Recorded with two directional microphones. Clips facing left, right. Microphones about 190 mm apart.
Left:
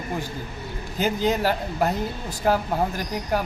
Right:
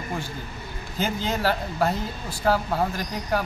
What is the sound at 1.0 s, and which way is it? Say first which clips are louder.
Speech: left 4 dB; 15° left (ahead or behind).